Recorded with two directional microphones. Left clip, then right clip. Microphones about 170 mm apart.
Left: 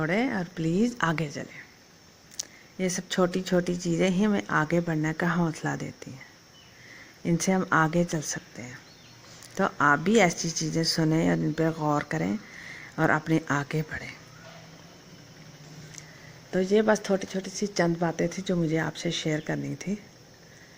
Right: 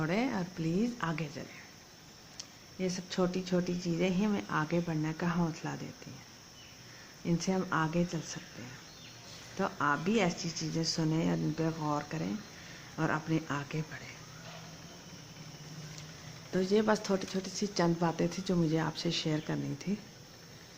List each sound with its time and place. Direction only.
0.0 s speech: 25° left (ahead or behind)
7.3 s speech: 35° left (ahead or behind)
9.6 s speech: 35° left (ahead or behind)
16.5 s speech: 20° left (ahead or behind)